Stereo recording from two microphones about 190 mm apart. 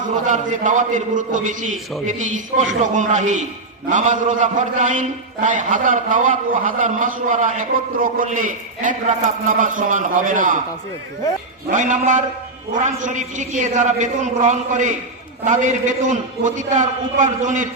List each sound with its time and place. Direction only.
0.3 s a man's voice: 40° right (ahead or behind)
11.7 s a man's voice: 40° right (ahead or behind)